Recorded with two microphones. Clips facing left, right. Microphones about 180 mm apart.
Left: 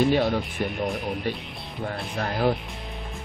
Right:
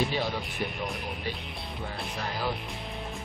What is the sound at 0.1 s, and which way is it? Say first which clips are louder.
Speech: left 9 dB; 55° left (ahead or behind).